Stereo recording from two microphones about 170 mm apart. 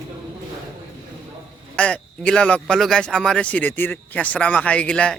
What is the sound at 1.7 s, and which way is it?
Speech, 5° left (ahead or behind).